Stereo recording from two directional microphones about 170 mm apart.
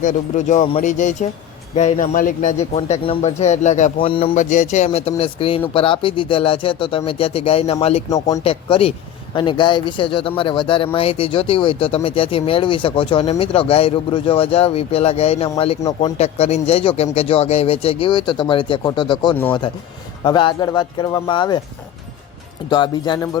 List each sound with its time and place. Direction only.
0.0 s speech: 45° left (ahead or behind)
4.0 s speech: 30° left (ahead or behind)
4.4 s speech: 45° left (ahead or behind); by 21.6 s 25° left (ahead or behind)
22.7 s speech: 25° left (ahead or behind)